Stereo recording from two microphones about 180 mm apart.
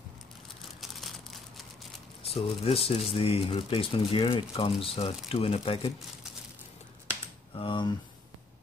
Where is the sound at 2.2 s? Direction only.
35° left (ahead or behind).